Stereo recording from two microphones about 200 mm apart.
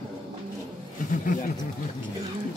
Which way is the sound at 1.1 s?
40° left (ahead or behind).